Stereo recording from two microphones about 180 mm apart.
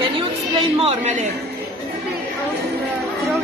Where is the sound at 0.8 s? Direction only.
40° right (ahead or behind).